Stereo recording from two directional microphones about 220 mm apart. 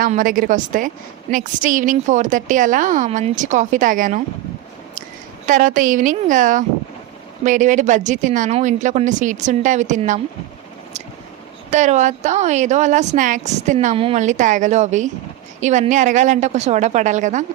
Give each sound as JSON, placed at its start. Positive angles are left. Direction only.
{"t": 0.0, "sound": "a woman's voice", "side_deg": -40}
{"t": 5.5, "sound": "a woman's voice", "side_deg": -35}
{"t": 11.7, "sound": "a woman's voice", "side_deg": -30}